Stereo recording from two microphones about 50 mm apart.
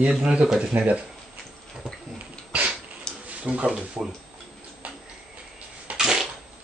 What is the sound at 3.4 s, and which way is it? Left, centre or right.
Speech, centre.